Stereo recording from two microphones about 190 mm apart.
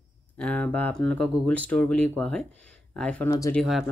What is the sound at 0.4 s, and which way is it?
Speech, 10° left (ahead or behind).